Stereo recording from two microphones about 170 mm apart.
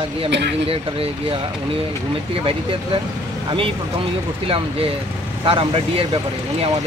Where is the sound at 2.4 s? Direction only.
30° right (ahead or behind).